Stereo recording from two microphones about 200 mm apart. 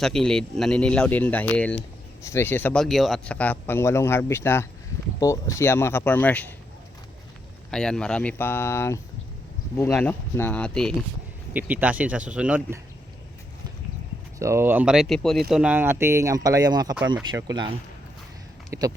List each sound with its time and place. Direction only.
0.0 s speech: 5° left (ahead or behind)
7.7 s speech: 5° left (ahead or behind)
11.5 s speech: 10° right (ahead or behind)
14.3 s speech: 15° right (ahead or behind)
18.7 s speech: 15° right (ahead or behind)